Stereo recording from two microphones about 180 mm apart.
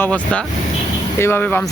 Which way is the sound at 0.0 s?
5° left (ahead or behind).